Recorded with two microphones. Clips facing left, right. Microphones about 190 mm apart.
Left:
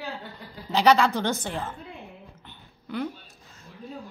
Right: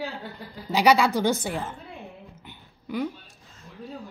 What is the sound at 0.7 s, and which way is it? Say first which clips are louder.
Speech: even; 10° right (ahead or behind).